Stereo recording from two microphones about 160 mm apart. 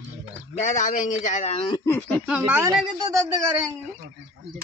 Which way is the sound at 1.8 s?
15° left (ahead or behind).